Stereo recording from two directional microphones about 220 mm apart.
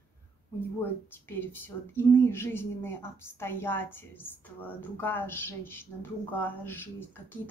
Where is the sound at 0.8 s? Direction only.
10° left (ahead or behind).